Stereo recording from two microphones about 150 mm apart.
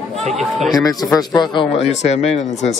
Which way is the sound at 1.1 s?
30° left (ahead or behind).